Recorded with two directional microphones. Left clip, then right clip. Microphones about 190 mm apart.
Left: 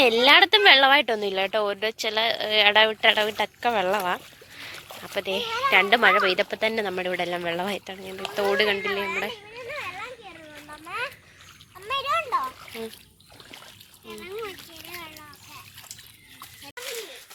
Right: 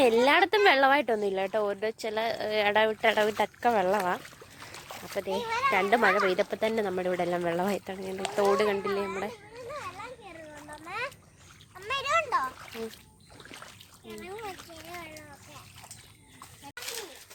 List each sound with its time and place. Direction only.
0.0 s a woman's voice: 10° right (ahead or behind)
4.6 s boat: centre (ahead or behind)
5.7 s a woman's voice: 5° right (ahead or behind)
9.0 s a child's voice: centre (ahead or behind)
10.8 s splash: 40° left (ahead or behind)
11.9 s splash: 5° left (ahead or behind)